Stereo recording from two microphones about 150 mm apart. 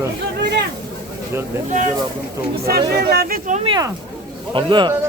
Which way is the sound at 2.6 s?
90° right.